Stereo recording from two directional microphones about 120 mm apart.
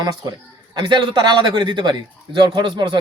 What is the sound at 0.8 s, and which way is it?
A man's voice, 40° right (ahead or behind).